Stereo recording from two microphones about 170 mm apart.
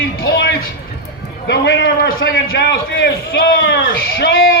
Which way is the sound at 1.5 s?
80° left.